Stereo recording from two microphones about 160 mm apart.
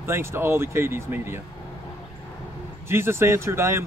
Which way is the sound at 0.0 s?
15° right (ahead or behind).